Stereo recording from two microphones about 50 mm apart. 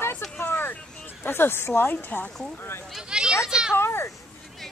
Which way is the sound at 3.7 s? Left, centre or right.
Left.